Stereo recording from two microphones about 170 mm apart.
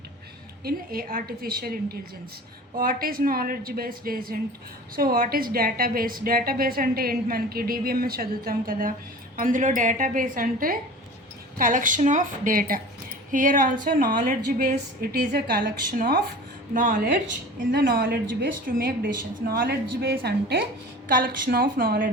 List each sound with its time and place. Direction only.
0.6 s a woman's voice: 60° right (ahead or behind)
16.7 s a woman's voice: 50° right (ahead or behind)
17.6 s a woman's voice: 70° right (ahead or behind)
21.1 s a woman's voice: 55° right (ahead or behind)